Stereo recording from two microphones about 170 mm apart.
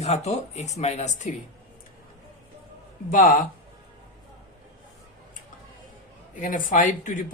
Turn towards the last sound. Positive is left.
turn(degrees=50)  # may be behind; listen again after turning